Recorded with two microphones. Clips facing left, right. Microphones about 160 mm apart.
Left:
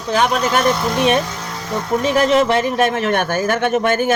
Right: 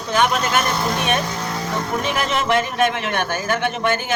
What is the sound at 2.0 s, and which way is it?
A man's voice, 40° left (ahead or behind).